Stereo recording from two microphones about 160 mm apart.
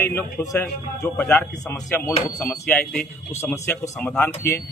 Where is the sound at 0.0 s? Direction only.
20° left (ahead or behind).